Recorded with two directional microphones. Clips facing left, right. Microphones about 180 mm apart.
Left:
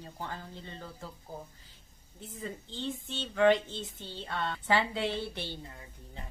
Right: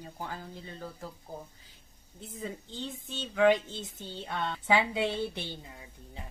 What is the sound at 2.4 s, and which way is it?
Speech, 15° right (ahead or behind).